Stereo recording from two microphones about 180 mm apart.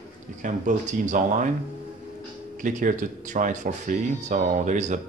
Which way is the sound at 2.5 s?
45° right (ahead or behind).